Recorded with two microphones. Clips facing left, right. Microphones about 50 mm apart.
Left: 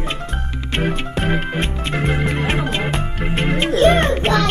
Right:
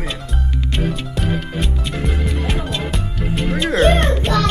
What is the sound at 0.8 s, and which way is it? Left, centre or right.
Music, left.